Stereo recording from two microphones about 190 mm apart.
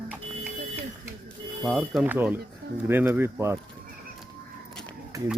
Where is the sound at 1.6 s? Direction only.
Centre (ahead or behind).